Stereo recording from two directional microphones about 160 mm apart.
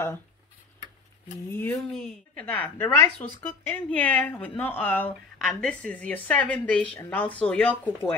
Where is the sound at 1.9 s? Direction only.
5° left (ahead or behind).